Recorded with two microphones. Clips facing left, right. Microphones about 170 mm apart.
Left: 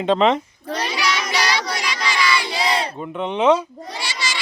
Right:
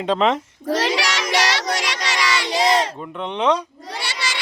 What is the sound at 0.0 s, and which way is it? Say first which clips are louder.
Speech: left 2 dB; centre (ahead or behind).